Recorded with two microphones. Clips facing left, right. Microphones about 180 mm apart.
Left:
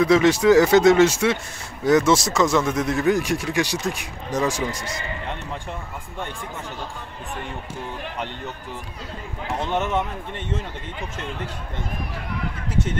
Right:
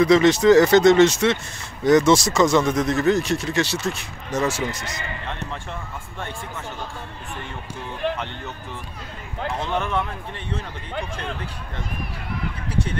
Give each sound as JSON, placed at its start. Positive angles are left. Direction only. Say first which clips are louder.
{"t": 0.0, "sound": "speech", "louder": "right 1 dB", "side_deg": 5}
{"t": 9.7, "sound": "speech", "louder": "left 2 dB", "side_deg": 20}